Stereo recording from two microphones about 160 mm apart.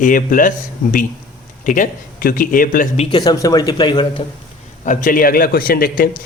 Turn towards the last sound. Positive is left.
turn(degrees=65)  # may be behind; listen again after turning